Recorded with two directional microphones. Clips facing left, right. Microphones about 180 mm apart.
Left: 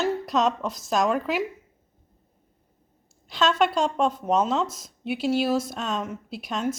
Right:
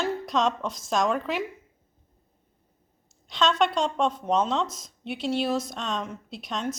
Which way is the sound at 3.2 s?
5° left (ahead or behind).